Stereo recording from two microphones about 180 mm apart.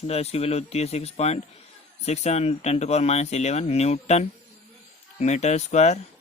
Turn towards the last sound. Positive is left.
turn(degrees=40)  # may be behind; listen again after turning